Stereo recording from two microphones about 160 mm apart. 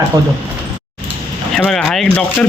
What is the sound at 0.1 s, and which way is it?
Speech, 25° right (ahead or behind).